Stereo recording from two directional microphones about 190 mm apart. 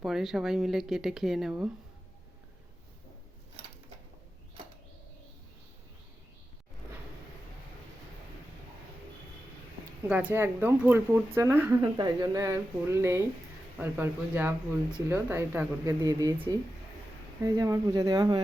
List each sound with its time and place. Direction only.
0.0 s speech: centre (ahead or behind)
10.1 s speech: 10° right (ahead or behind)